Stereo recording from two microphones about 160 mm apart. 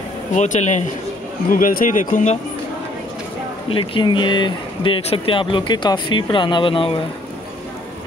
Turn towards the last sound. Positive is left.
turn(degrees=35)  # may be behind; listen again after turning